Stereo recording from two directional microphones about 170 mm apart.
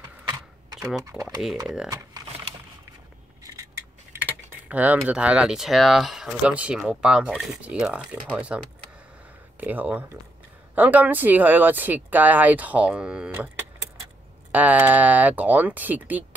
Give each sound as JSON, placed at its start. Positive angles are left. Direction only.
{"t": 0.3, "sound": "camera", "side_deg": -20}
{"t": 1.1, "sound": "speech", "side_deg": -5}
{"t": 1.9, "sound": "typing", "side_deg": -20}
{"t": 3.5, "sound": "speech", "side_deg": -15}
{"t": 9.6, "sound": "speech", "side_deg": -10}
{"t": 14.5, "sound": "speech", "side_deg": -10}